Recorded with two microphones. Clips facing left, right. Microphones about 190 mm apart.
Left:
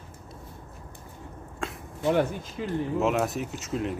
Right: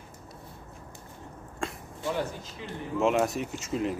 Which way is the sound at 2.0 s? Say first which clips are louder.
Left 7 dB; 60° left (ahead or behind).